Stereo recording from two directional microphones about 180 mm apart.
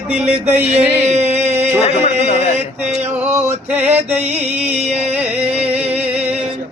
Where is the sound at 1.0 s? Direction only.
35° right (ahead or behind).